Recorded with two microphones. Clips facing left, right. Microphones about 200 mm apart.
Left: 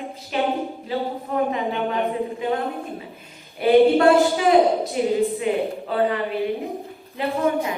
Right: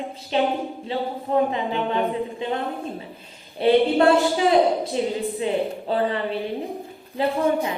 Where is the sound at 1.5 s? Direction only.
30° right (ahead or behind).